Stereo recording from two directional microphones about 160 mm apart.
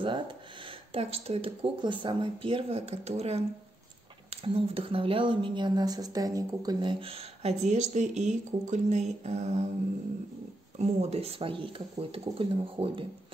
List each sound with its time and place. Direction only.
0.0 s a woman's voice: 30° right (ahead or behind); by 9.0 s 45° right (ahead or behind)
9.2 s mantra: 45° right (ahead or behind)
10.8 s a woman's voice: 40° right (ahead or behind)